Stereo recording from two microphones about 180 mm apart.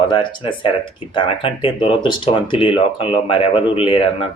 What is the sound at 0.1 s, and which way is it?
Speech, 25° left (ahead or behind).